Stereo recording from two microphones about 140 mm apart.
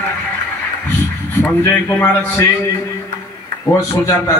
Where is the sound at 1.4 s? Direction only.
15° left (ahead or behind).